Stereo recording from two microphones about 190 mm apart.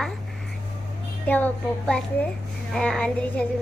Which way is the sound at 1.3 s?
10° left (ahead or behind).